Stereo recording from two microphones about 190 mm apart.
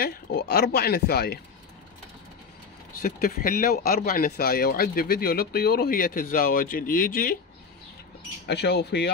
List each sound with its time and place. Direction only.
0.0 s speech: 55° left (ahead or behind)
3.0 s speech: 45° left (ahead or behind)
8.5 s speech: 60° left (ahead or behind)